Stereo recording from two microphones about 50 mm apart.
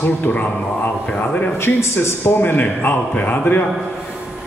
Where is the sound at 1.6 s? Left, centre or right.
Left.